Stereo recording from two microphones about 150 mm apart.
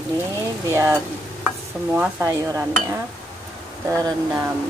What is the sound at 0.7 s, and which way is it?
Speech, 15° right (ahead or behind).